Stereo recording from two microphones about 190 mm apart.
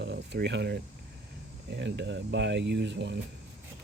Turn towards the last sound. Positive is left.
turn(degrees=-65)  # may be behind; listen again after turning